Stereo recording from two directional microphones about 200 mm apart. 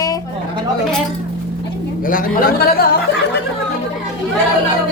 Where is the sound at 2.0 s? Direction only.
45° left (ahead or behind).